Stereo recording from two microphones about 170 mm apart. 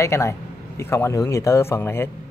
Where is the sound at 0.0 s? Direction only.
15° left (ahead or behind).